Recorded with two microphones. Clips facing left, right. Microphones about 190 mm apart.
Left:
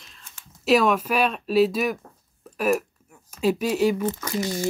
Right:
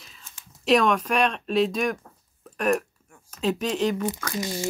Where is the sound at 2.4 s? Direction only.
5° left (ahead or behind).